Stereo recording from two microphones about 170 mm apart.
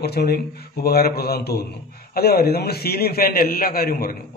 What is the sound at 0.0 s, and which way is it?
A man's voice, 70° left (ahead or behind).